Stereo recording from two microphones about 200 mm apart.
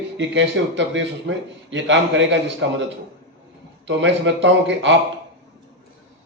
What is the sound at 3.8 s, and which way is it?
A man's voice, 65° right (ahead or behind).